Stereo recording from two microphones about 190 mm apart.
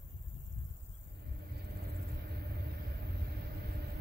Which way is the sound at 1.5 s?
60° right (ahead or behind).